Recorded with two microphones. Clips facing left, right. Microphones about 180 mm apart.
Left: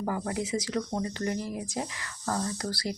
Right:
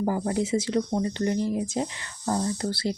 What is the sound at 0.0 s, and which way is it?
Speech, 30° right (ahead or behind).